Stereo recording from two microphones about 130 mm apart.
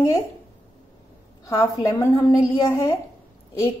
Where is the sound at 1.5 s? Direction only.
25° left (ahead or behind).